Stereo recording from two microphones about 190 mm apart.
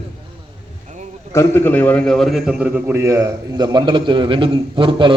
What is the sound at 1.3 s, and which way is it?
A man's voice, 10° left (ahead or behind).